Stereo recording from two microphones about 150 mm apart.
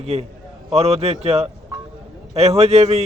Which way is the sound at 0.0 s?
45° right (ahead or behind).